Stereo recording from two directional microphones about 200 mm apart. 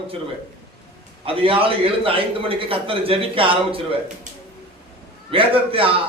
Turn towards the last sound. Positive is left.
turn(degrees=-25)  # may be behind; listen again after turning